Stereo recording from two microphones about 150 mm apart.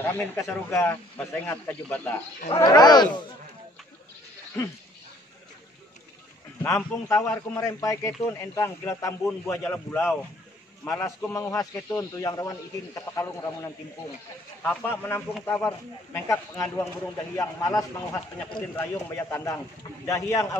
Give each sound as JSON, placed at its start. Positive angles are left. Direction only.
{"t": 0.0, "sound": "speech", "side_deg": 15}
{"t": 2.6, "sound": "speech", "side_deg": 25}
{"t": 6.6, "sound": "speech", "side_deg": 15}